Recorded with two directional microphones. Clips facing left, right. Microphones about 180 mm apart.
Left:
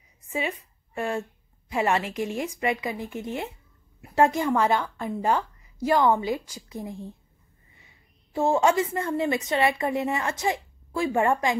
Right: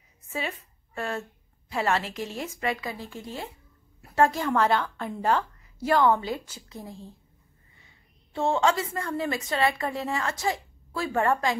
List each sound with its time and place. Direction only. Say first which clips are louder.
0.3 s a woman's voice: left 3 dB; 15° left (ahead or behind)
8.4 s a woman's voice: left 3 dB; 20° left (ahead or behind)